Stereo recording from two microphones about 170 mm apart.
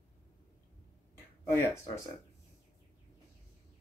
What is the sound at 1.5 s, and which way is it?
Speech, 15° left (ahead or behind).